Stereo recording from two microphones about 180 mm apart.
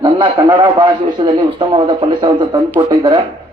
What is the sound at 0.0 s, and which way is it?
A man's voice, 25° right (ahead or behind).